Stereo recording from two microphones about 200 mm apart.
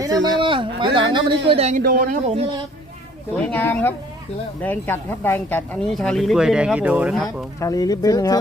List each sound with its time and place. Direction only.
0.0 s a sound: 20° right (ahead or behind)
1.5 s a man's voice: 30° right (ahead or behind)
1.8 s speech: 45° right (ahead or behind)
2.2 s a man's voice: 30° right (ahead or behind)
3.3 s speech: 5° left (ahead or behind)
7.6 s speech: 20° left (ahead or behind)